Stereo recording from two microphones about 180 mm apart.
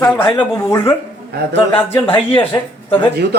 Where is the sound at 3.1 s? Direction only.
65° right (ahead or behind).